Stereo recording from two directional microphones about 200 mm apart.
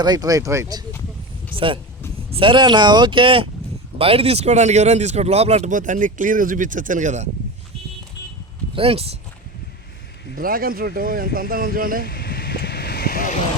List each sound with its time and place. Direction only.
0.0 s speech: 20° right (ahead or behind); by 7.3 s 35° right (ahead or behind)
8.7 s speech: 30° right (ahead or behind)
10.3 s speech: 45° right (ahead or behind)
12.0 s vehicle: 50° left (ahead or behind)